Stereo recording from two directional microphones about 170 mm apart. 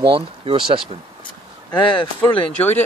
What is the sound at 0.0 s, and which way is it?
Speech, 35° right (ahead or behind).